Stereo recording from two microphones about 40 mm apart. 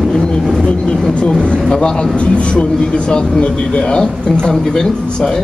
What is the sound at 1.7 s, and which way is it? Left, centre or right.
A man's voice, centre.